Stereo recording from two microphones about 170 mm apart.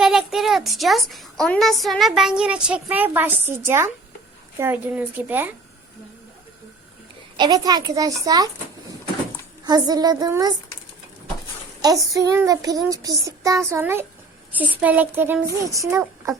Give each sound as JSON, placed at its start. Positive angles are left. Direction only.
{"t": 0.0, "sound": "a woman's voice", "side_deg": 0}
{"t": 7.3, "sound": "child singing", "side_deg": -25}
{"t": 9.6, "sound": "child singing", "side_deg": -25}
{"t": 11.8, "sound": "child singing", "side_deg": -20}
{"t": 14.5, "sound": "speech", "side_deg": -10}